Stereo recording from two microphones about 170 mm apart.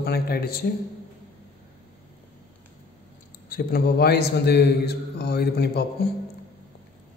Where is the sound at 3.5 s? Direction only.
65° left (ahead or behind).